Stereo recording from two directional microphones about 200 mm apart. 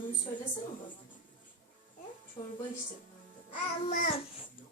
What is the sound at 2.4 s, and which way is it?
Speech, 20° left (ahead or behind).